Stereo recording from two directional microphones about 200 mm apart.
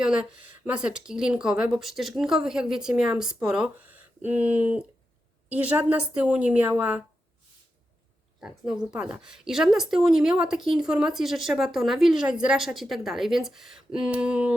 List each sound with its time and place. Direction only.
0.0 s a woman's voice: 5° right (ahead or behind)
8.4 s speech: 5° right (ahead or behind)